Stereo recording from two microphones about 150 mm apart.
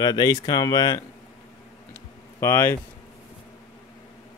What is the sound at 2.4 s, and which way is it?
Speech, 20° left (ahead or behind).